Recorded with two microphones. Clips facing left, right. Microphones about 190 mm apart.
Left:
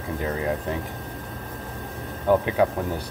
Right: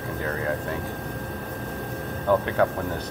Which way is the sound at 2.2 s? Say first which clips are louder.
Left 2 dB; 10° left (ahead or behind).